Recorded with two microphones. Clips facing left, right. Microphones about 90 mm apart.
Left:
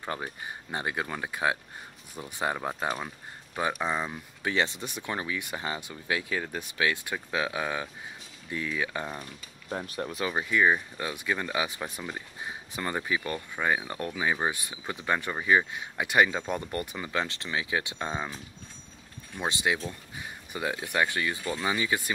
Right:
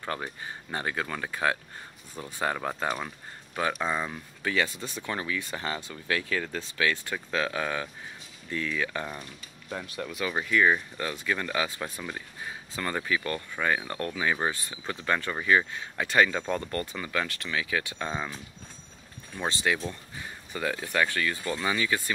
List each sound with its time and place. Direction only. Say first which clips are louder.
0.0 s speech: right 1 dB; 15° left (ahead or behind)
3.8 s speech: even; 15° left (ahead or behind)
9.7 s speech: left 2 dB; 40° left (ahead or behind)
10.3 s speech: right 1 dB; 20° left (ahead or behind)